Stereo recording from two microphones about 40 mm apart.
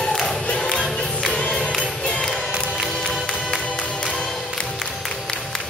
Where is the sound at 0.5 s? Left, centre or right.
Centre.